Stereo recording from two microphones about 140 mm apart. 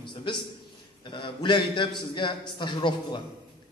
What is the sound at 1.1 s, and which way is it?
A man's voice, 35° left (ahead or behind).